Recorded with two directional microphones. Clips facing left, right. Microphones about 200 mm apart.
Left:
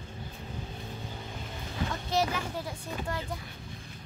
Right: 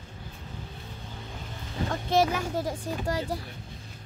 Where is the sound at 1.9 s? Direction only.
50° right (ahead or behind).